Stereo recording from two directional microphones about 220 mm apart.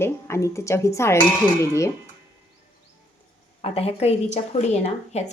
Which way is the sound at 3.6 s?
25° left (ahead or behind).